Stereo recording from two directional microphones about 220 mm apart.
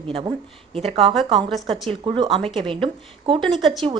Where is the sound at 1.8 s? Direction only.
25° right (ahead or behind).